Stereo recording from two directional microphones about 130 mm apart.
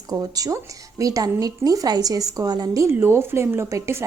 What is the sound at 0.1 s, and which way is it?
Speech, 30° right (ahead or behind).